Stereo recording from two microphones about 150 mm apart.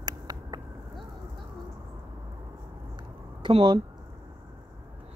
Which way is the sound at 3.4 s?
35° right (ahead or behind).